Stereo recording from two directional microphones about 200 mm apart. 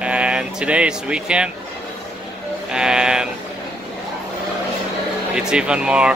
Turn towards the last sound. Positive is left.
turn(degrees=-5)  # may be behind; listen again after turning